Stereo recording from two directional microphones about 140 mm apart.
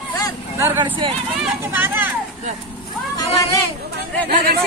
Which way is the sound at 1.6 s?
15° right (ahead or behind).